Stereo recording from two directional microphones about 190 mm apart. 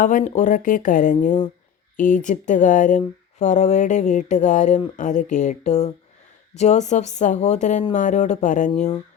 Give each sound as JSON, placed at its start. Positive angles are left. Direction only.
{"t": 0.0, "sound": "speech", "side_deg": 45}